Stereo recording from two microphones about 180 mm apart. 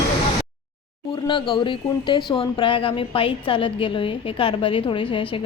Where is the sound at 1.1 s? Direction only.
25° left (ahead or behind).